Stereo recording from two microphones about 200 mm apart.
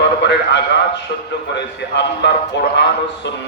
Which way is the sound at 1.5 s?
60° left (ahead or behind).